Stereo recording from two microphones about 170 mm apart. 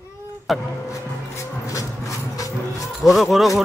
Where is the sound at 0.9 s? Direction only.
20° left (ahead or behind).